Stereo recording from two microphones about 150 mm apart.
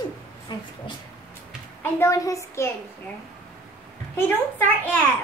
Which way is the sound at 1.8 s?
20° left (ahead or behind).